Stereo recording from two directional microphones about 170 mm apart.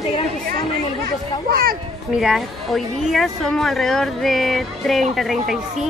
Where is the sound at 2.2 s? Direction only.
Centre (ahead or behind).